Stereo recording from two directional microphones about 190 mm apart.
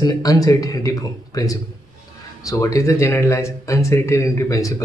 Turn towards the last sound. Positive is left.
turn(degrees=15)  # may be behind; listen again after turning